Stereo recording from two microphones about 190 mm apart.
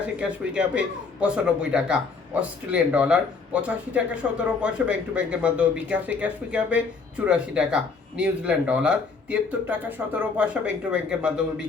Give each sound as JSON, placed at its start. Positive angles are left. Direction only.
{"t": 0.2, "sound": "speech", "side_deg": -5}